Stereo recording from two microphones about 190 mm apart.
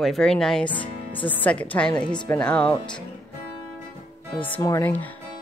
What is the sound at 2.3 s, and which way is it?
Speech, 5° left (ahead or behind).